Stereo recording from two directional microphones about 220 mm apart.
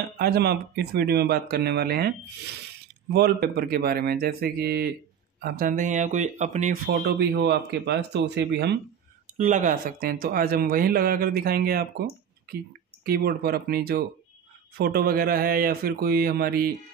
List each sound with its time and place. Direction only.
0.2 s speech: 45° right (ahead or behind)
6.9 s speech: 50° right (ahead or behind)
9.4 s speech: 35° right (ahead or behind)
13.0 s speech: 45° right (ahead or behind)